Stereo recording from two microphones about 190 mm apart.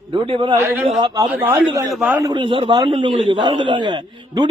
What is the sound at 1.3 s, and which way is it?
Speech, 10° right (ahead or behind).